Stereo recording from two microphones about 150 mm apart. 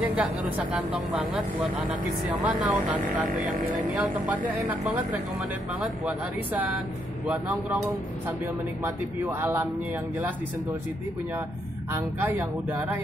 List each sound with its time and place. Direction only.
0.1 s speech: 5° right (ahead or behind)
3.3 s speech: 60° right (ahead or behind)
3.9 s speech: 10° right (ahead or behind)
7.2 s speech: 10° right (ahead or behind)
8.8 s speech: 15° right (ahead or behind)
11.9 s speech: 15° right (ahead or behind)